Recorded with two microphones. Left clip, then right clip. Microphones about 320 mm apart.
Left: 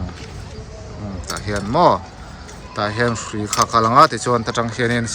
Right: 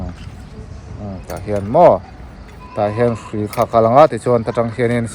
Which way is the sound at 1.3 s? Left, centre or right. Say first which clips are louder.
Right 5 dB; centre.